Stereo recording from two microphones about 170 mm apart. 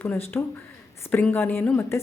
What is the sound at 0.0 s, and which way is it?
A woman's voice, 10° left (ahead or behind).